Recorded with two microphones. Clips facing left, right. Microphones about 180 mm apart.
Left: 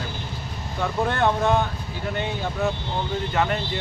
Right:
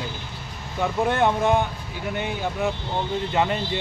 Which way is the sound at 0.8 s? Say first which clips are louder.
Right 1 dB; 15° right (ahead or behind).